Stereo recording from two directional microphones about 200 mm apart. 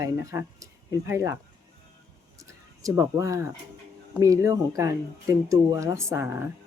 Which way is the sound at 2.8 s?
15° right (ahead or behind).